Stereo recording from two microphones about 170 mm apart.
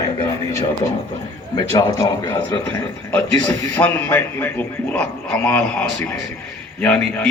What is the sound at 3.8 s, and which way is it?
A man's voice, 10° left (ahead or behind).